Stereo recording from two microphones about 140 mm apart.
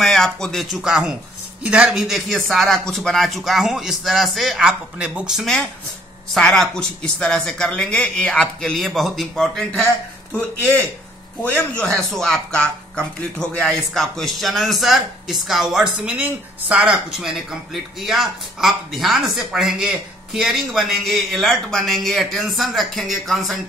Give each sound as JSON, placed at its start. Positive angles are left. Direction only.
{"t": 0.0, "sound": "speech", "side_deg": 5}
{"t": 11.4, "sound": "speech", "side_deg": 10}